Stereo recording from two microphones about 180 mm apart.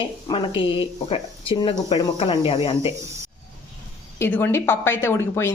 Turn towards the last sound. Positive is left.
turn(degrees=15)  # may be behind; listen again after turning